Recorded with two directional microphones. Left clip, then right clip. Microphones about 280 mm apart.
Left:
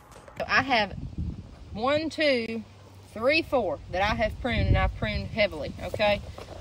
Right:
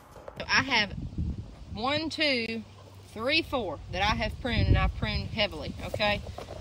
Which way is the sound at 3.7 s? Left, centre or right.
Centre.